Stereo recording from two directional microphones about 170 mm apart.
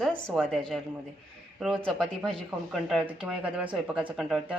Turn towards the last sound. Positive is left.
turn(degrees=-5)  # may be behind; listen again after turning